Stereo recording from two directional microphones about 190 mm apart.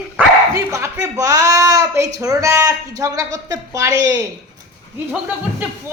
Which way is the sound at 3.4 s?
20° right (ahead or behind).